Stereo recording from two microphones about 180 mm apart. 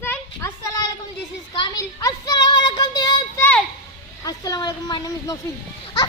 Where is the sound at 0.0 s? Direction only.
15° left (ahead or behind).